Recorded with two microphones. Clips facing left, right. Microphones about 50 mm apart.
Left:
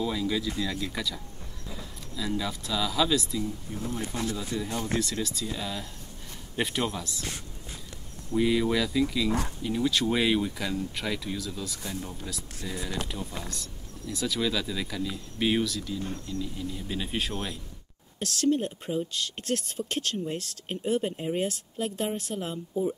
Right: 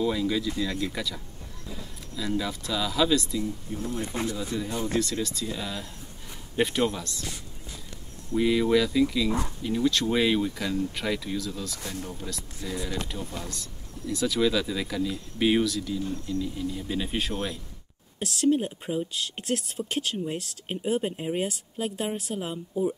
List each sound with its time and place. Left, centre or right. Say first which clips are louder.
0.0 s speech: right 3 dB; centre
4.1 s speech: right 1 dB; right
4.6 s speech: right 2 dB; centre
8.4 s speech: right 3 dB; centre
11.9 s speech: right 1 dB; centre
12.6 s speech: right 2 dB; centre